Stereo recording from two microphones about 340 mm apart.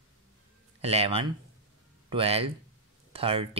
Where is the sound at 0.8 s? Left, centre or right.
Centre.